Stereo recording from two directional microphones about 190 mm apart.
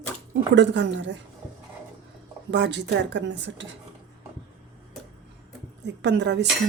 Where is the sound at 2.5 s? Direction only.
70° right (ahead or behind).